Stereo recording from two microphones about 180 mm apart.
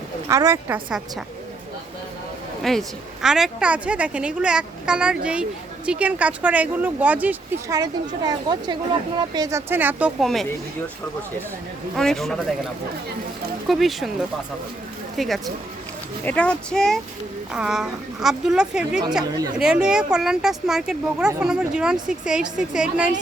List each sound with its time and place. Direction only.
0.3 s a woman's voice: 15° right (ahead or behind)
2.6 s a woman's voice: centre (ahead or behind)
7.8 s speech: 25° right (ahead or behind)
10.2 s speech: centre (ahead or behind)
11.9 s speech: centre (ahead or behind)
13.7 s speech: centre (ahead or behind)
16.2 s speech: 5° left (ahead or behind)
19.2 s speech: 20° right (ahead or behind)
19.5 s speech: 5° right (ahead or behind)